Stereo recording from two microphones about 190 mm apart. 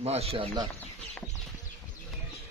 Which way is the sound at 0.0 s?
35° right (ahead or behind).